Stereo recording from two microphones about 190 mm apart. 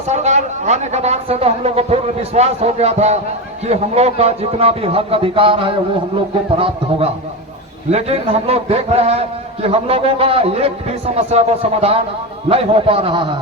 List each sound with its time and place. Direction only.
0.1 s a man's voice: 35° right (ahead or behind)